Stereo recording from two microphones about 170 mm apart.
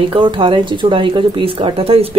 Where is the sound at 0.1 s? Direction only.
30° right (ahead or behind).